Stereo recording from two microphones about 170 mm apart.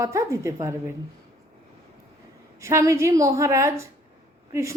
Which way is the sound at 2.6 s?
15° right (ahead or behind).